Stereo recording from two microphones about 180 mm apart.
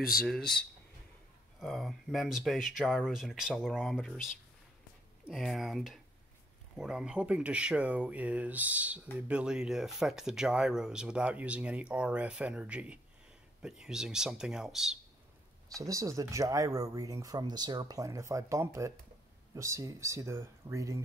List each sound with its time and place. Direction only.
0.1 s speech: centre (ahead or behind)
1.6 s speech: centre (ahead or behind)
15.7 s speech: 20° right (ahead or behind)